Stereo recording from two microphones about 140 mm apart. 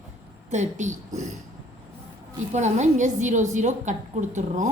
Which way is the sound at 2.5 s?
55° right (ahead or behind).